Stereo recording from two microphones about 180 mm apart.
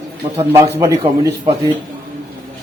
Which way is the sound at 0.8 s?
20° right (ahead or behind).